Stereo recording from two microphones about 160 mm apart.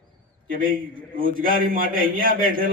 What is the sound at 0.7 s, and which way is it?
Mantra, 65° right (ahead or behind).